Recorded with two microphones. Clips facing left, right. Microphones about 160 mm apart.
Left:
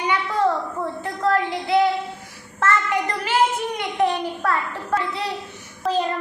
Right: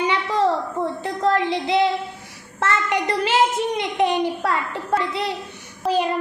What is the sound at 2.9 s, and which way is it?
Child singing, 85° right.